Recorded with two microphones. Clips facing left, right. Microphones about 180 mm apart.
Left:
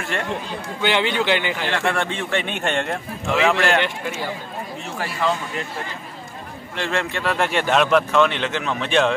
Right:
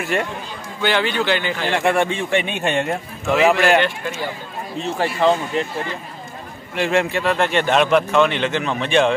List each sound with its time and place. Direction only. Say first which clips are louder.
0.8 s a man's voice: right 1 dB; 20° left (ahead or behind)
1.7 s a man's voice: right 7 dB; 15° right (ahead or behind)
4.8 s speech: right 7 dB; 25° right (ahead or behind)
6.7 s a man's voice: right 6 dB; 10° right (ahead or behind)
7.3 s speech: right 1 dB; 5° left (ahead or behind)